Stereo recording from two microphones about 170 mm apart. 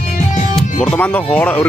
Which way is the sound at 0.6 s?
5° left (ahead or behind).